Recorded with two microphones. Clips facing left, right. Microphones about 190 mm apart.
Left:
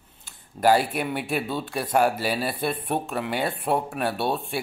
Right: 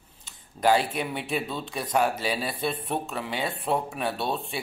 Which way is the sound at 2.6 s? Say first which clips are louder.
Left 2 dB; 50° left (ahead or behind).